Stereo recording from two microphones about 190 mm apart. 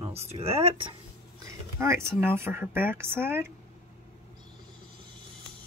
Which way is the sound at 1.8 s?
15° right (ahead or behind).